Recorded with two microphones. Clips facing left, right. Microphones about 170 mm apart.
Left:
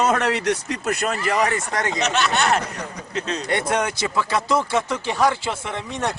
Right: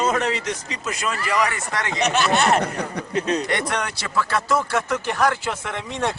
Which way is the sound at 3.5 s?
20° left (ahead or behind).